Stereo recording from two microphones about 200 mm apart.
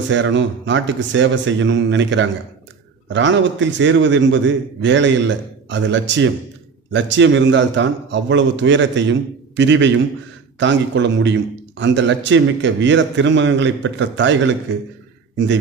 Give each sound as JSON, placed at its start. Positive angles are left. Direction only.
{"t": 0.1, "sound": "a man's voice", "side_deg": -65}